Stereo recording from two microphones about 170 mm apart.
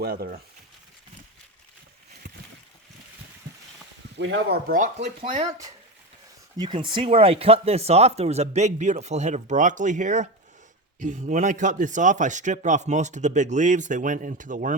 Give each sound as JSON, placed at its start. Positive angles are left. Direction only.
{"t": 0.0, "sound": "speech", "side_deg": -65}
{"t": 4.2, "sound": "speech", "side_deg": -90}
{"t": 4.7, "sound": "speech", "side_deg": -45}
{"t": 6.6, "sound": "speech", "side_deg": -30}